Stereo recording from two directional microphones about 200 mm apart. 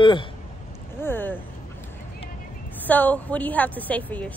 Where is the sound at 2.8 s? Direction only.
10° left (ahead or behind).